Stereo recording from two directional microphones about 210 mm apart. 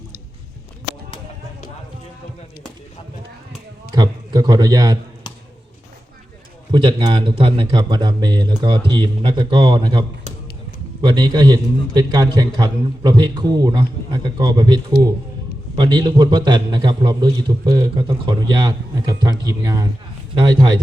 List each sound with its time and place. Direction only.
3.9 s a sound: 20° right (ahead or behind)
6.7 s a man's voice: 25° right (ahead or behind)
11.0 s a man's voice: 20° right (ahead or behind)